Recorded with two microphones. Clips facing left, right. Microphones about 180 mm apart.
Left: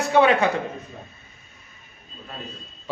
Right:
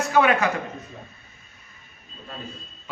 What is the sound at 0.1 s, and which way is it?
Speech, 30° left (ahead or behind).